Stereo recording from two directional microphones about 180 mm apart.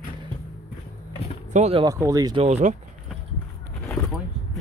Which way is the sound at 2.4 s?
35° right (ahead or behind).